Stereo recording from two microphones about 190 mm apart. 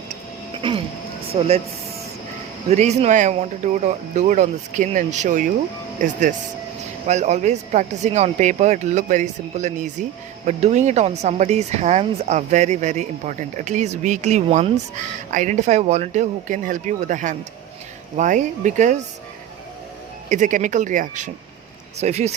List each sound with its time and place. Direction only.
1.3 s speech: 35° right (ahead or behind)
2.6 s speech: 35° right (ahead or behind)
20.3 s speech: 40° right (ahead or behind)